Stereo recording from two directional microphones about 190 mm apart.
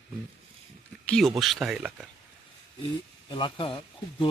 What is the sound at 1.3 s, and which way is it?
Speech, centre (ahead or behind).